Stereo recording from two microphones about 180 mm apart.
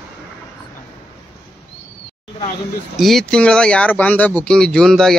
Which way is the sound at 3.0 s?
Centre (ahead or behind).